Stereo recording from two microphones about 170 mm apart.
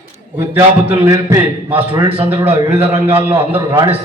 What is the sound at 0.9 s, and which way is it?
A man's voice, 20° right (ahead or behind).